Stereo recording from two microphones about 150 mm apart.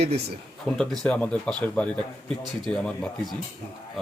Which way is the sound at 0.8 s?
5° left (ahead or behind).